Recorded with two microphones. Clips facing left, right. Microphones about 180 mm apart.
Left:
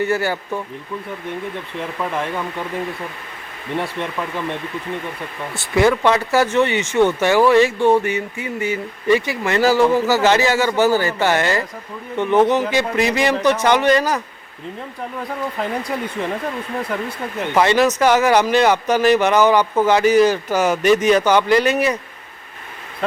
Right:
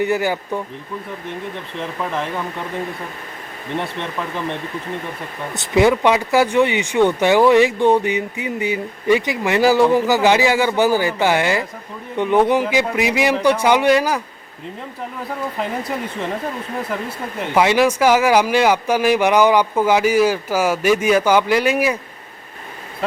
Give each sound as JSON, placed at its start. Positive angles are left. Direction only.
{"t": 0.0, "sound": "speech", "side_deg": -15}
{"t": 2.0, "sound": "speech", "side_deg": 0}
{"t": 5.5, "sound": "speech", "side_deg": -20}
{"t": 16.9, "sound": "speech", "side_deg": 0}